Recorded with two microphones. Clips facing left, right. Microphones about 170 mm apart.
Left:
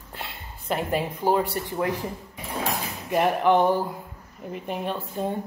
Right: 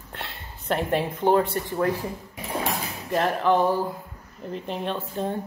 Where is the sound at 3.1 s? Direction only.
15° left (ahead or behind).